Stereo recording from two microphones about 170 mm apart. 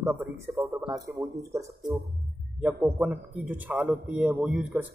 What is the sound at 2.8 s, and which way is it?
A man's voice, 5° right (ahead or behind).